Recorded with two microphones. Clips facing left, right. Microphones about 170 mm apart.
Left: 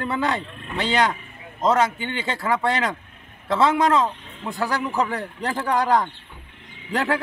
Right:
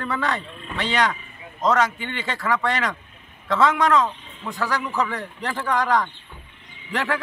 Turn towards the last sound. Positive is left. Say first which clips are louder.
# left 2 dB
turn(degrees=30)  # may be behind; listen again after turning